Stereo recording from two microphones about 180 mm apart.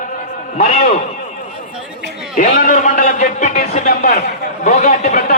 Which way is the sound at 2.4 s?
45° left (ahead or behind).